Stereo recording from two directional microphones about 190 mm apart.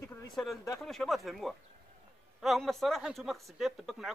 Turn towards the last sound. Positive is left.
turn(degrees=0)  # may be behind; listen again after turning